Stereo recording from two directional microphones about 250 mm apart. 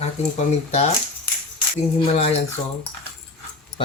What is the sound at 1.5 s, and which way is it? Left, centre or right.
Music, left.